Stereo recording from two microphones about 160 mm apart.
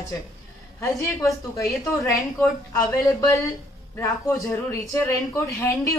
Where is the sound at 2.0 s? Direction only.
20° left (ahead or behind).